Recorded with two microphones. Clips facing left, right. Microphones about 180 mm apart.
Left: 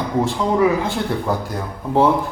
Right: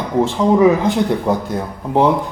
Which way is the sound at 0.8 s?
20° right (ahead or behind).